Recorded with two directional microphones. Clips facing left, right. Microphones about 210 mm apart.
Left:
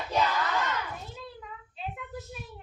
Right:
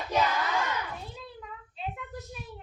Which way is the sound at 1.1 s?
Centre (ahead or behind).